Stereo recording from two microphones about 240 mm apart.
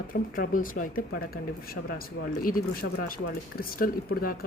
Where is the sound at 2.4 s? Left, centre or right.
Left.